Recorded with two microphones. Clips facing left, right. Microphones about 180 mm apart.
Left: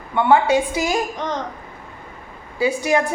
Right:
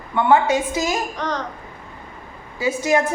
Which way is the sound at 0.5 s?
15° left (ahead or behind).